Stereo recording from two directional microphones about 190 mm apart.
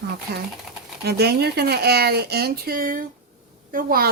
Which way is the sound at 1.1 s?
55° right (ahead or behind).